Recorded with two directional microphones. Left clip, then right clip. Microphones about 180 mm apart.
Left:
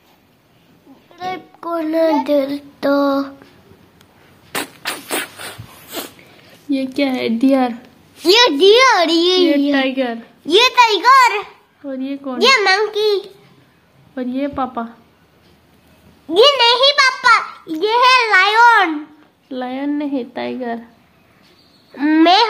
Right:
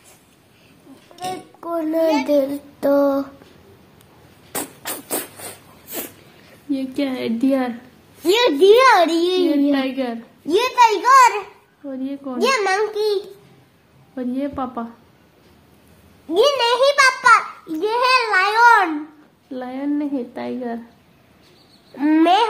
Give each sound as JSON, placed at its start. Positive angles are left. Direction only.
{"t": 1.1, "sound": "speech", "side_deg": -10}
{"t": 4.5, "sound": "a sound", "side_deg": -5}
{"t": 6.7, "sound": "a woman's voice", "side_deg": 30}
{"t": 8.2, "sound": "a child's voice", "side_deg": 0}
{"t": 9.7, "sound": "a woman's voice", "side_deg": 30}
{"t": 10.4, "sound": "a child's voice", "side_deg": 0}
{"t": 11.9, "sound": "a woman's voice", "side_deg": 35}
{"t": 12.4, "sound": "a child's voice", "side_deg": 0}
{"t": 14.1, "sound": "a woman's voice", "side_deg": 35}
{"t": 16.3, "sound": "a woman's voice", "side_deg": 5}
{"t": 16.6, "sound": "a child's voice", "side_deg": -10}
{"t": 19.5, "sound": "a woman's voice", "side_deg": 45}
{"t": 21.9, "sound": "a child's voice", "side_deg": 0}